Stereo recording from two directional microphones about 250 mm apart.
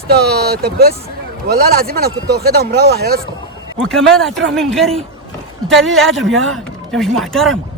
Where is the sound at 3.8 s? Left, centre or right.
Centre.